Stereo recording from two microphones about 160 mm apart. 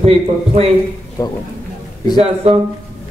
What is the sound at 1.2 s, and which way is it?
Speech, 25° left (ahead or behind).